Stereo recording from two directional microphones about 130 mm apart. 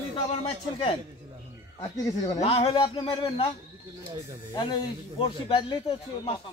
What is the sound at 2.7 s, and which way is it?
Speech, 35° left (ahead or behind).